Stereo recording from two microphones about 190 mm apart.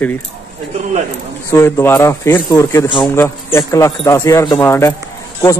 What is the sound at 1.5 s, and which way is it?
A man's voice, 15° left (ahead or behind).